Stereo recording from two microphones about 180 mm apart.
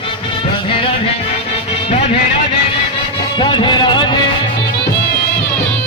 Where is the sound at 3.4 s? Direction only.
25° left (ahead or behind).